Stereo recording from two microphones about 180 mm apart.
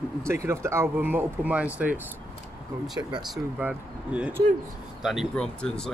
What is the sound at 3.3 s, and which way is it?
Speech, 5° right (ahead or behind).